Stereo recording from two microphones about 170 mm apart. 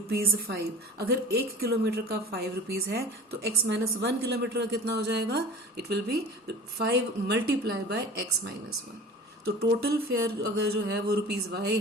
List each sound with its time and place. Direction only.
0.1 s a woman's voice: 65° right (ahead or behind)
3.4 s a woman's voice: 80° right
9.6 s a woman's voice: 65° right (ahead or behind)